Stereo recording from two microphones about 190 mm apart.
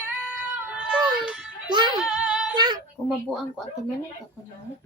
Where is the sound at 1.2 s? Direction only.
5° right (ahead or behind).